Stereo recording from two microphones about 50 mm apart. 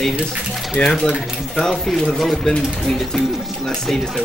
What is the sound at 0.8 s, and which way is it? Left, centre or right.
Speech, left.